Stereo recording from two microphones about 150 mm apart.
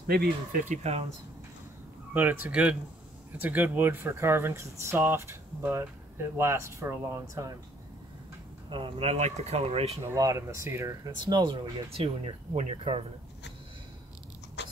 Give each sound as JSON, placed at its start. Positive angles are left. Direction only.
{"t": 0.0, "sound": "speech", "side_deg": -90}
{"t": 2.1, "sound": "speech", "side_deg": -10}
{"t": 8.6, "sound": "speech", "side_deg": -35}
{"t": 10.0, "sound": "speech", "side_deg": -20}
{"t": 11.1, "sound": "speech", "side_deg": -30}
{"t": 12.2, "sound": "speech", "side_deg": -45}
{"t": 14.6, "sound": "a sound", "side_deg": 90}